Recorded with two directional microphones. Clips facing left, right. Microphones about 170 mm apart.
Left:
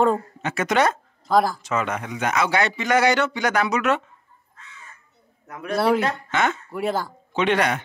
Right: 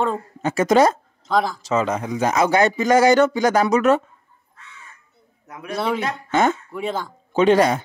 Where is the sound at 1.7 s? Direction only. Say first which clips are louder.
Right 4 dB; 30° right (ahead or behind).